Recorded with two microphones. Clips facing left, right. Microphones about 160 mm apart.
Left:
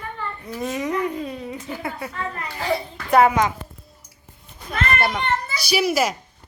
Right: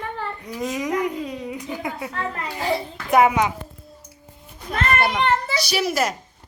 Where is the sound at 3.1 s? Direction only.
15° right (ahead or behind).